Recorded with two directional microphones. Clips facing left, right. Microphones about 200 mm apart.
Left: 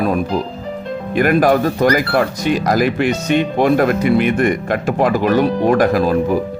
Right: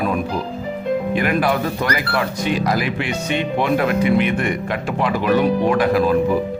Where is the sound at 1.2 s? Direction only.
45° left (ahead or behind).